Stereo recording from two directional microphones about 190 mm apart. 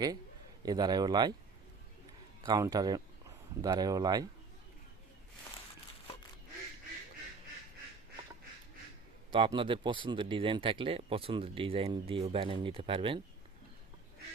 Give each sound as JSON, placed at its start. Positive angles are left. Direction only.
{"t": 0.6, "sound": "speech", "side_deg": -20}
{"t": 2.5, "sound": "speech", "side_deg": -20}
{"t": 9.3, "sound": "speech", "side_deg": -25}